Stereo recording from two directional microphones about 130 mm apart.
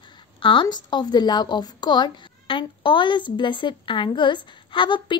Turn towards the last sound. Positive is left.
turn(degrees=40)  # may be behind; listen again after turning